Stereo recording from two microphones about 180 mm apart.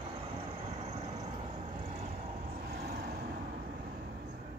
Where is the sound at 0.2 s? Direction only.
30° right (ahead or behind).